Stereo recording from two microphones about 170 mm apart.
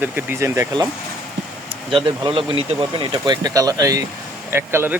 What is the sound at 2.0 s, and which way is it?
Speech, 30° right (ahead or behind).